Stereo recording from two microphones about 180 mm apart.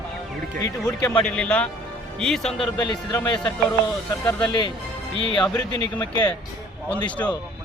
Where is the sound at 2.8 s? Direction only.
20° left (ahead or behind).